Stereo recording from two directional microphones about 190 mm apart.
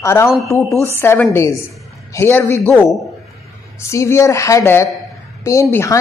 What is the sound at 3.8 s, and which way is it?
Speech, 15° left (ahead or behind).